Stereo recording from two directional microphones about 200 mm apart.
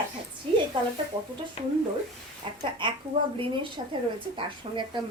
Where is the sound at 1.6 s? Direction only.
30° left (ahead or behind).